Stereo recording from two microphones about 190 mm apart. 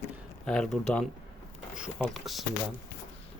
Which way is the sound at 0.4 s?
5° left (ahead or behind).